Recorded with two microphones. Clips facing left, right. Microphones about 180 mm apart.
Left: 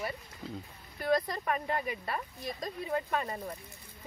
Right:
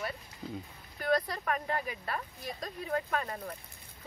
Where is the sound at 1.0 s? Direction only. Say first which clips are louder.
Left 1 dB; 10° left (ahead or behind).